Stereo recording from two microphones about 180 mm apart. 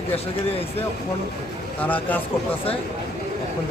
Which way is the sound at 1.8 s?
10° left (ahead or behind).